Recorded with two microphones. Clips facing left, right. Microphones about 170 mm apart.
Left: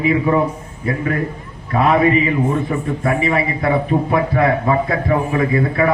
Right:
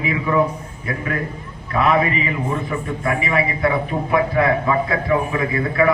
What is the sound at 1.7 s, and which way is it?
A man's voice, 35° left (ahead or behind).